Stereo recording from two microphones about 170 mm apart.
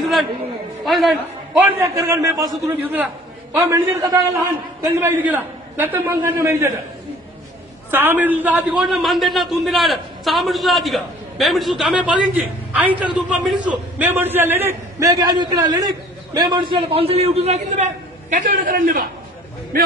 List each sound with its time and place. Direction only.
0.0 s a sound: centre (ahead or behind)
0.8 s a man's voice: centre (ahead or behind)
1.8 s a man's voice: 20° right (ahead or behind)
7.9 s a man's voice: 10° right (ahead or behind); by 19.0 s 55° right (ahead or behind)